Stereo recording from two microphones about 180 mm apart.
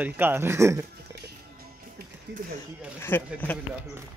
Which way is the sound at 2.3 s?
70° right (ahead or behind).